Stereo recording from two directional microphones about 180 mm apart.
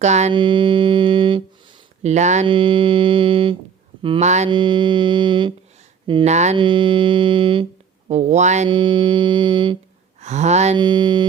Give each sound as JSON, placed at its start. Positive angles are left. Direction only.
{"t": 0.0, "sound": "speech", "side_deg": -40}
{"t": 0.3, "sound": "speech", "side_deg": -25}
{"t": 2.0, "sound": "speech", "side_deg": -40}
{"t": 4.4, "sound": "speech", "side_deg": -25}
{"t": 6.3, "sound": "speech", "side_deg": -40}
{"t": 6.6, "sound": "speech", "side_deg": -25}
{"t": 8.7, "sound": "speech", "side_deg": -25}
{"t": 10.2, "sound": "speech", "side_deg": -40}
{"t": 10.8, "sound": "speech", "side_deg": -25}